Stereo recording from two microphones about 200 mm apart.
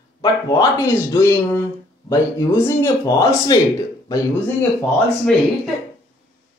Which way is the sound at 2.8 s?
15° left (ahead or behind).